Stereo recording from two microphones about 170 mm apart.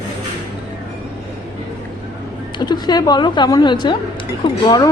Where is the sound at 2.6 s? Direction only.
25° left (ahead or behind).